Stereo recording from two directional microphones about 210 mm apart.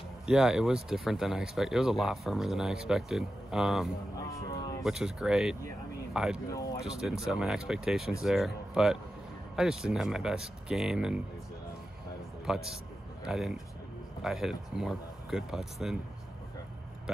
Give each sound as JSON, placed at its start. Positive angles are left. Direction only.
{"t": 0.3, "sound": "speech", "side_deg": 0}
{"t": 4.2, "sound": "speech", "side_deg": 15}
{"t": 4.8, "sound": "speech", "side_deg": -5}
{"t": 12.4, "sound": "a man's voice", "side_deg": 0}